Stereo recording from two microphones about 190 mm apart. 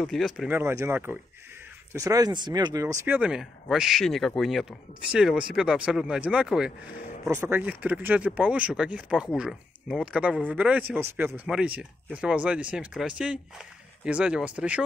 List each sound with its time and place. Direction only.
0.0 s speech: centre (ahead or behind)
0.5 s speech: 10° right (ahead or behind)
3.2 s speech: 5° right (ahead or behind)
7.2 s speech: 15° right (ahead or behind)